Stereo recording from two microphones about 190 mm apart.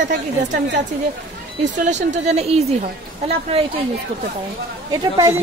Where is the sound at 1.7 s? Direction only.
40° right (ahead or behind).